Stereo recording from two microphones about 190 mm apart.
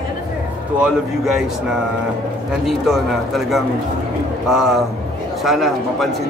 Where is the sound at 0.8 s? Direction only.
5° right (ahead or behind).